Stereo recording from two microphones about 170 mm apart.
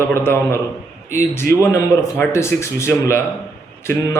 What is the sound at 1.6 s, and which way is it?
A man's voice, 15° left (ahead or behind).